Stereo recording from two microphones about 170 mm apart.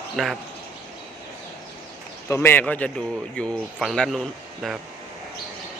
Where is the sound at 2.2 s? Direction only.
15° left (ahead or behind).